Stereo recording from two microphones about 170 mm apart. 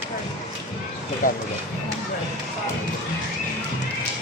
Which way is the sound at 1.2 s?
50° left (ahead or behind).